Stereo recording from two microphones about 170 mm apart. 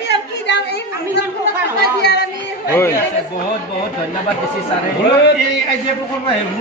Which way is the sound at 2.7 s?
15° left (ahead or behind).